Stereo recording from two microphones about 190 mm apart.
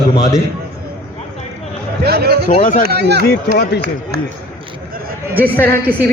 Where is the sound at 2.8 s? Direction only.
60° right (ahead or behind).